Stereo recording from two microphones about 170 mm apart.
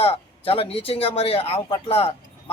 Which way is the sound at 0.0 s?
35° left (ahead or behind).